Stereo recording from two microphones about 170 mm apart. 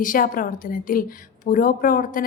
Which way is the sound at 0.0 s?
55° left (ahead or behind).